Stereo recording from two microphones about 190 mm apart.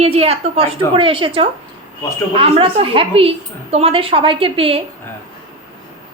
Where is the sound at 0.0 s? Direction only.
30° right (ahead or behind).